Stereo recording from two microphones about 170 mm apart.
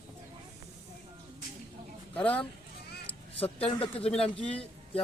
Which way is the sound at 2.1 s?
10° left (ahead or behind).